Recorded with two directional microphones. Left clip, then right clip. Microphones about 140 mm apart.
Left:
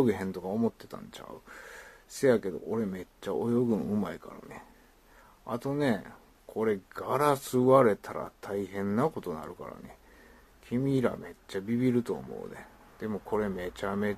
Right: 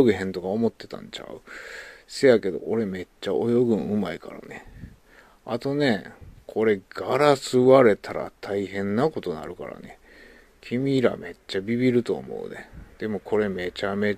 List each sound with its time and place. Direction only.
0.0 s speech: 25° right (ahead or behind)